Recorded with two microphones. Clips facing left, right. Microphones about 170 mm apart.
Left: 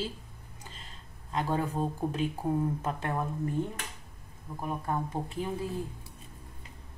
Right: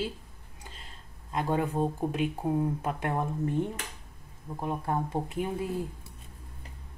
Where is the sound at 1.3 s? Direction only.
10° right (ahead or behind).